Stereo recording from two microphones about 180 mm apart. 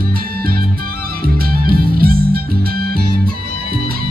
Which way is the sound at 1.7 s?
55° right (ahead or behind).